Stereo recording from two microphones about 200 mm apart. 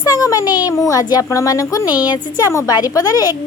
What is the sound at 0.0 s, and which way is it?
A child's voice, 20° left (ahead or behind).